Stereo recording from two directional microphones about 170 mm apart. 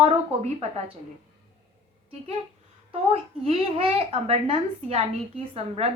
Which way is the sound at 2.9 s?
35° right (ahead or behind).